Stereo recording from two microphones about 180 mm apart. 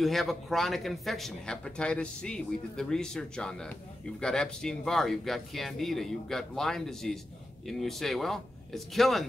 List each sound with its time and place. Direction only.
0.0 s speech: centre (ahead or behind)